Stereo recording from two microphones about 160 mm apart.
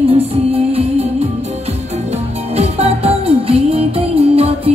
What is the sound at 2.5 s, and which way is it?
Music, 40° right (ahead or behind).